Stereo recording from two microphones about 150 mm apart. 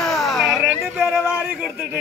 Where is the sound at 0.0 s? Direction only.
Centre (ahead or behind).